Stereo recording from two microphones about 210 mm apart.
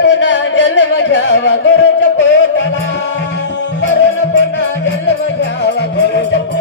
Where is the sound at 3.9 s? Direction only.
60° left (ahead or behind).